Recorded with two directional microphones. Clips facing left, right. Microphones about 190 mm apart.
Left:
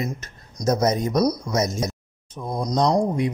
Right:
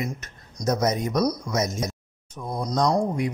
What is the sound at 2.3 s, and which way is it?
Speech, 20° left (ahead or behind).